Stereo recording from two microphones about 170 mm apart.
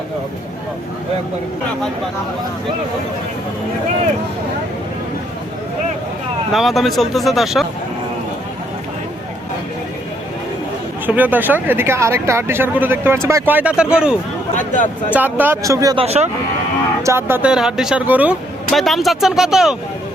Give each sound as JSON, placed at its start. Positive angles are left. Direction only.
{"t": 6.5, "sound": "speech", "side_deg": 0}
{"t": 11.0, "sound": "speech", "side_deg": -10}
{"t": 14.5, "sound": "speech", "side_deg": 45}
{"t": 15.1, "sound": "speech", "side_deg": -10}
{"t": 16.0, "sound": "speech", "side_deg": -40}
{"t": 17.0, "sound": "speech", "side_deg": -15}
{"t": 18.7, "sound": "speech", "side_deg": 0}